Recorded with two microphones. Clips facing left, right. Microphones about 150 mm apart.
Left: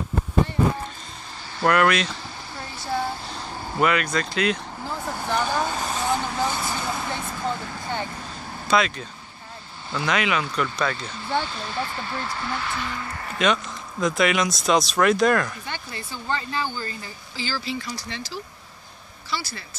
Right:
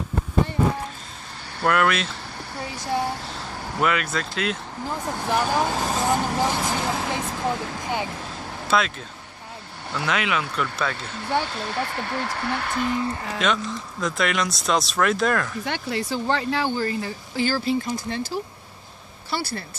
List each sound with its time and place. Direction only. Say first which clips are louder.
1.6 s speech: left 2 dB; centre (ahead or behind)
3.8 s speech: left 2 dB; centre (ahead or behind)
5.9 s speech: right 3 dB; 40° right (ahead or behind)
6.5 s speech: right 3 dB; 90° right
7.8 s a sound: right 1 dB; 10° right (ahead or behind)
8.6 s speech: left 1 dB; centre (ahead or behind)
10.0 s speech: left 1 dB; centre (ahead or behind)
11.0 s speech: right 1 dB; 65° right (ahead or behind); by 12.9 s 50° right (ahead or behind)
12.9 s speech: right 8 dB; 20° right (ahead or behind)
13.4 s speech: left 3 dB; centre (ahead or behind)
15.6 s speech: right 8 dB; 70° right (ahead or behind); by 19.6 s 55° right (ahead or behind)